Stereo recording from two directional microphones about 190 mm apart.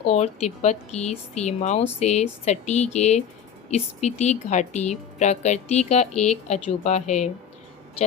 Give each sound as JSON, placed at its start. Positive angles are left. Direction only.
{"t": 0.0, "sound": "speech", "side_deg": 35}